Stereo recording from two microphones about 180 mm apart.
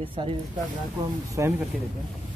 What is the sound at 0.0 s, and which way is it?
Speech, 30° right (ahead or behind).